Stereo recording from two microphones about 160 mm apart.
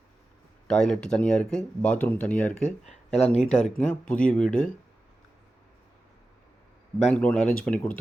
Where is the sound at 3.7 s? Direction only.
5° left (ahead or behind).